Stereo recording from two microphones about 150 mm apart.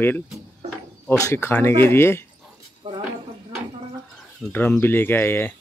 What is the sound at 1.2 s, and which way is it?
Speech, 15° left (ahead or behind).